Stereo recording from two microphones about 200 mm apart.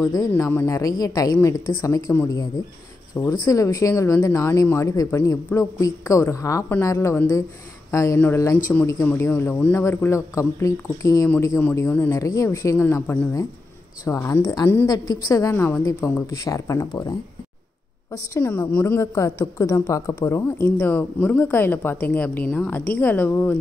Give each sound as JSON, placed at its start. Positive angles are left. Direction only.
{"t": 0.1, "sound": "a woman's voice", "side_deg": 15}
{"t": 3.4, "sound": "a woman's voice", "side_deg": 15}
{"t": 18.1, "sound": "a woman's voice", "side_deg": 15}